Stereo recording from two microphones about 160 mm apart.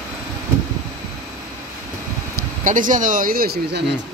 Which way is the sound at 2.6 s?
55° right (ahead or behind).